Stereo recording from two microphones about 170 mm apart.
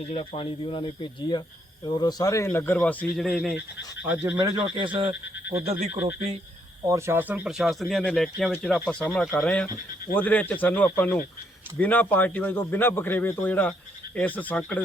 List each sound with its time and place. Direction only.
0.1 s a man's voice: 35° left (ahead or behind); by 4.4 s 10° right (ahead or behind)
4.4 s speech: 25° right (ahead or behind)
5.0 s a man's voice: 10° right (ahead or behind); by 14.8 s 10° left (ahead or behind)